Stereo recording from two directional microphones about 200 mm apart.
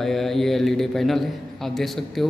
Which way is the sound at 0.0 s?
Centre (ahead or behind).